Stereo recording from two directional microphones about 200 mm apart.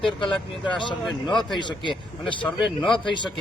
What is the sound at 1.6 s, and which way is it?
Speech, 25° left (ahead or behind).